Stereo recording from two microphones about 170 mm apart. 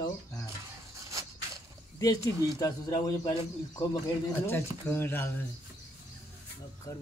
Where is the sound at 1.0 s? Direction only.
20° right (ahead or behind).